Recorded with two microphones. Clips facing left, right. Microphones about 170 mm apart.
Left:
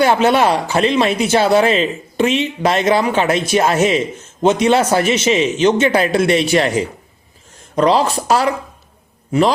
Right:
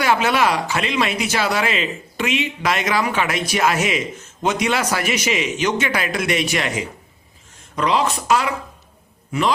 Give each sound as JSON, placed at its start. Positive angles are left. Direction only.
{"t": 0.0, "sound": "speech", "side_deg": 30}